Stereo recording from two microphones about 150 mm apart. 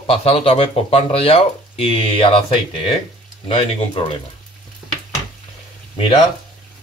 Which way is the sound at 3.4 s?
40° left (ahead or behind).